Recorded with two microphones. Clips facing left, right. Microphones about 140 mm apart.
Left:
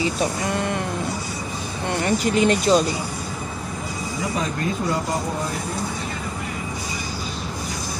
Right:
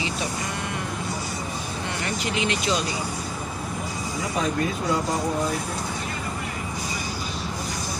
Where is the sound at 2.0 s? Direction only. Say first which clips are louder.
Left 9 dB; 45° left (ahead or behind).